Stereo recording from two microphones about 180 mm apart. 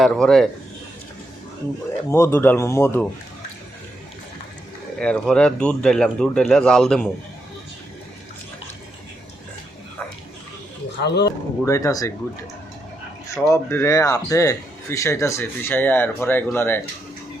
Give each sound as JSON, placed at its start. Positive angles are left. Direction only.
{"t": 0.0, "sound": "speech", "side_deg": 5}
{"t": 2.0, "sound": "speech", "side_deg": 15}
{"t": 4.9, "sound": "speech", "side_deg": 5}
{"t": 11.0, "sound": "speech", "side_deg": 70}
{"t": 11.6, "sound": "speech", "side_deg": 15}
{"t": 13.3, "sound": "speech", "side_deg": 15}